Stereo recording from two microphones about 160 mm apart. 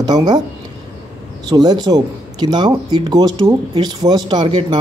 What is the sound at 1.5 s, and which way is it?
Speech, 25° right (ahead or behind).